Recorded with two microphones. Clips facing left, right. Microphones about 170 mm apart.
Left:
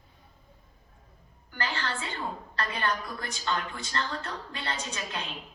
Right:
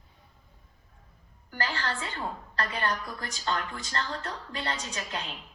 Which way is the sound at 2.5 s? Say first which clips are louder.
Even; 40° right (ahead or behind).